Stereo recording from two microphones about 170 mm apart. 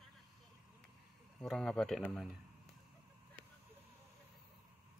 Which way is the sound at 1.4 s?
5° left (ahead or behind).